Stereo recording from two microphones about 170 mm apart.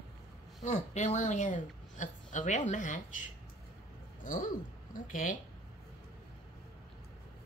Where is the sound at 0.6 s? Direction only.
45° left (ahead or behind).